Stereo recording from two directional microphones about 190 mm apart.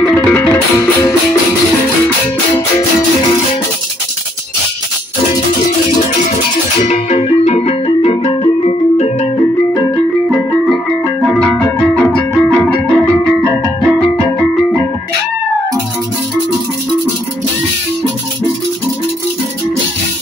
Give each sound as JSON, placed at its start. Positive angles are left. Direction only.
{"t": 0.1, "sound": "music", "side_deg": 10}
{"t": 6.9, "sound": "music", "side_deg": 35}
{"t": 11.3, "sound": "music", "side_deg": 5}